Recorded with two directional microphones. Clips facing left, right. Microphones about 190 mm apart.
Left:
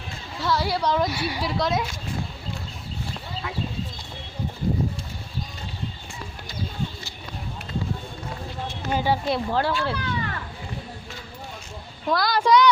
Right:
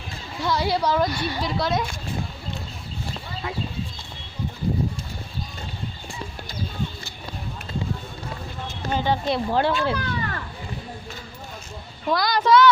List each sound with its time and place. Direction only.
0.4 s a woman's voice: 20° right (ahead or behind)
0.8 s a woman's voice: 5° right (ahead or behind)
8.9 s speech: 10° left (ahead or behind)
9.5 s speech: 20° right (ahead or behind)
9.9 s a sound: 45° right (ahead or behind)
12.0 s a woman's voice: centre (ahead or behind)